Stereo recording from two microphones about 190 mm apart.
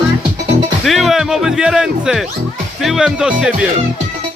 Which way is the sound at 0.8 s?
Centre (ahead or behind).